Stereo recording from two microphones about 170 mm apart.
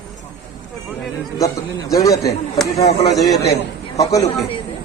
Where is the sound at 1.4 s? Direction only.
20° left (ahead or behind).